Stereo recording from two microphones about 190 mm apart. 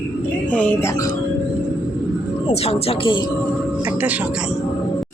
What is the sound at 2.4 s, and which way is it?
Speech, 30° left (ahead or behind).